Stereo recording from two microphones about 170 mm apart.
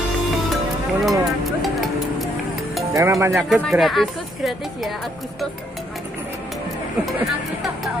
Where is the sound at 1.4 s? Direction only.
Centre (ahead or behind).